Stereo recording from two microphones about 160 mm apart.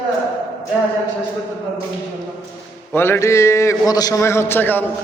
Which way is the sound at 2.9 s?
15° left (ahead or behind).